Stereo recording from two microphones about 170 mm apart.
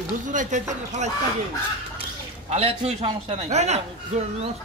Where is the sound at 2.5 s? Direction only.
35° right (ahead or behind).